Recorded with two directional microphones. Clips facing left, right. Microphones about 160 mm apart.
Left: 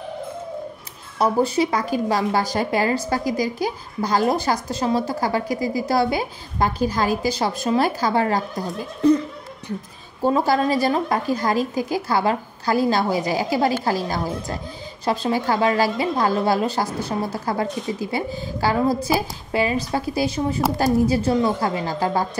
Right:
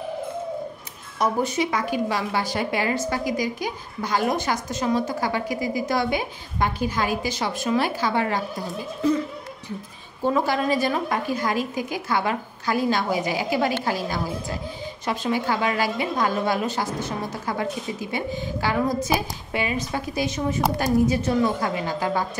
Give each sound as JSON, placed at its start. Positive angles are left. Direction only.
{"t": 1.1, "sound": "a woman's voice", "side_deg": 30}
{"t": 10.2, "sound": "a woman's voice", "side_deg": 35}